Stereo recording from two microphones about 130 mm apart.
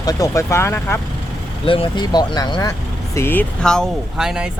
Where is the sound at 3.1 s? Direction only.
15° left (ahead or behind).